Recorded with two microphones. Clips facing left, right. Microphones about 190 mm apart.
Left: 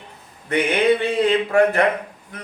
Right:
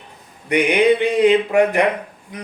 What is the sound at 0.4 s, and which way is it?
Mantra, 15° right (ahead or behind).